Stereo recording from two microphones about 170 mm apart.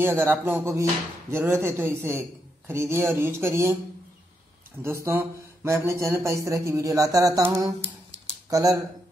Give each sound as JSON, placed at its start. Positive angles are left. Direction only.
{"t": 0.0, "sound": "speech", "side_deg": -15}
{"t": 4.8, "sound": "speech", "side_deg": -15}